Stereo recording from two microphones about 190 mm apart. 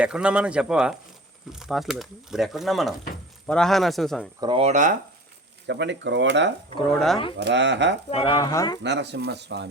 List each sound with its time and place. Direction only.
0.0 s speech: 5° right (ahead or behind)
4.4 s speech: 25° right (ahead or behind)
5.6 s speech: 70° right (ahead or behind)
6.8 s speech: centre (ahead or behind)
7.3 s speech: 65° right (ahead or behind)
8.1 s speech: 30° left (ahead or behind)
8.8 s speech: 65° right (ahead or behind)